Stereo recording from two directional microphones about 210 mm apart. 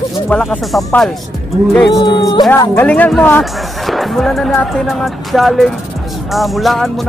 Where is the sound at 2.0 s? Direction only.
20° left (ahead or behind).